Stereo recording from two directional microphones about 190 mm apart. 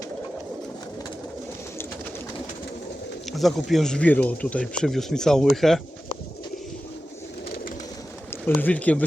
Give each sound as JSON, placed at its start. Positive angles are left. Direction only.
{"t": 3.3, "sound": "speech", "side_deg": 0}
{"t": 8.3, "sound": "speech", "side_deg": 10}